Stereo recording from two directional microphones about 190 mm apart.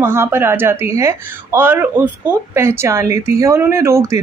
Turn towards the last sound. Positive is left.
turn(degrees=-15)  # may be behind; listen again after turning